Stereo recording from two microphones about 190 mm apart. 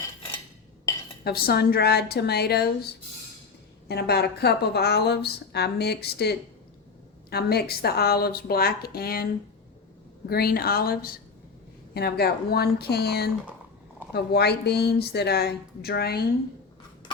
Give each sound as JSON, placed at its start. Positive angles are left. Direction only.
{"t": 1.2, "sound": "speech", "side_deg": 55}
{"t": 3.8, "sound": "speech", "side_deg": 60}
{"t": 10.2, "sound": "speech", "side_deg": 55}